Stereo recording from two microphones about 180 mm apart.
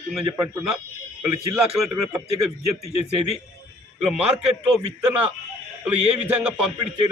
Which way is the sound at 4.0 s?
5° right (ahead or behind).